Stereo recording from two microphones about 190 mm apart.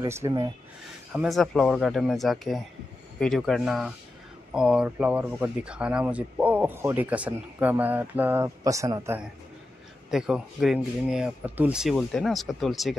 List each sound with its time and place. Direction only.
0.0 s speech: 15° right (ahead or behind)
1.1 s speech: centre (ahead or behind)
10.1 s speech: 5° right (ahead or behind)